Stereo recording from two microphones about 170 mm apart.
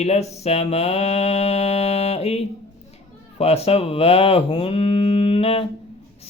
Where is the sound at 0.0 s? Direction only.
40° left (ahead or behind).